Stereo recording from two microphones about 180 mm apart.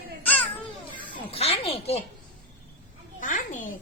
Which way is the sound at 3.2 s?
45° left (ahead or behind).